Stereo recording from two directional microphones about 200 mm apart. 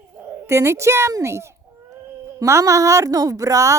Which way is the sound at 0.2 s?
15° right (ahead or behind).